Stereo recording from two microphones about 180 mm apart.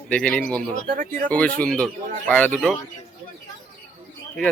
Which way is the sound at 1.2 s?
5° left (ahead or behind).